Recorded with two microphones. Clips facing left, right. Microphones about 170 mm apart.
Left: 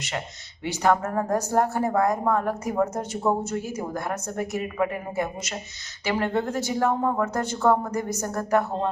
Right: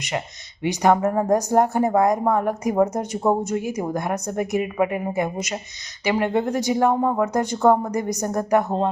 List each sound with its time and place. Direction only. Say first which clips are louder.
0.6 s speech: right 4 dB; 15° right (ahead or behind)